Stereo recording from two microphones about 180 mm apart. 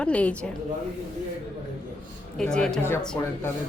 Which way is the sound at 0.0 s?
5° left (ahead or behind).